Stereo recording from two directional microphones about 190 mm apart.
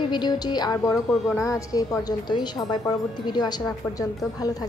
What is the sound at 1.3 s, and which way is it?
A woman's voice, 15° left (ahead or behind).